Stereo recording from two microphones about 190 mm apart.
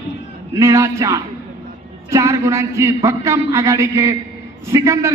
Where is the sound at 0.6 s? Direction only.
15° right (ahead or behind).